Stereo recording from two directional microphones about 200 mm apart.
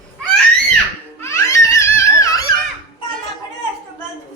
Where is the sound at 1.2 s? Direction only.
15° left (ahead or behind).